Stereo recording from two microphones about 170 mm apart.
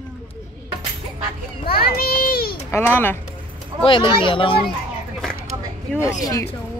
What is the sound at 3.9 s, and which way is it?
Speech, 30° left (ahead or behind).